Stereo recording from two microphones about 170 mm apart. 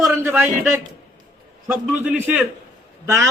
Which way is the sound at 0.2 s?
15° right (ahead or behind).